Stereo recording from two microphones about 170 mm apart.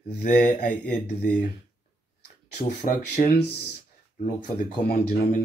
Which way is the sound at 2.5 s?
50° left (ahead or behind).